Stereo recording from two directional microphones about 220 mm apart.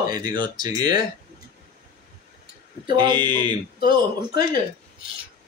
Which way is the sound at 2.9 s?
20° right (ahead or behind).